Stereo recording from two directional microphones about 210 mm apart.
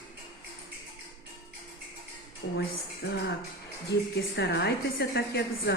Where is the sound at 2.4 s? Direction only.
60° left (ahead or behind).